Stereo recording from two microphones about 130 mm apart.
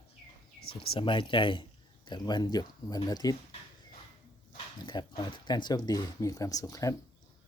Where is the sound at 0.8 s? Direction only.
40° left (ahead or behind).